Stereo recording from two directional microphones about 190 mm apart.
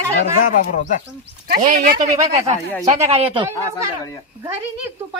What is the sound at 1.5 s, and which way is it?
Speech, 55° right (ahead or behind).